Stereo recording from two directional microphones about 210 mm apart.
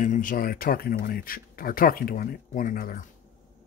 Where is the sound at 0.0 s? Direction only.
40° left (ahead or behind).